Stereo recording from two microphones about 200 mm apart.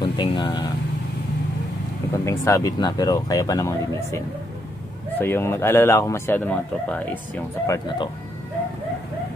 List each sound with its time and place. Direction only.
0.0 s speech: 20° left (ahead or behind)
2.1 s speech: 15° left (ahead or behind)
5.2 s speech: 10° left (ahead or behind)